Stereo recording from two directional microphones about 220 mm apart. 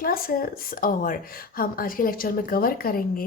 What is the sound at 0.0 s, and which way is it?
A woman's voice, 40° left (ahead or behind).